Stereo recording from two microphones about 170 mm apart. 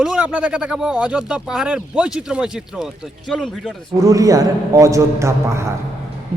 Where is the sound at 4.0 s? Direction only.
20° right (ahead or behind).